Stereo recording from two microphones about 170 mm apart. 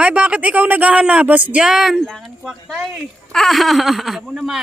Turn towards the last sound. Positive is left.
turn(degrees=0)  # may be behind; listen again after turning